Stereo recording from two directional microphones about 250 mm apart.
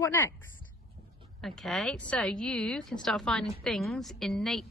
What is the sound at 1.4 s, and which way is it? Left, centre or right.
A woman's voice, centre.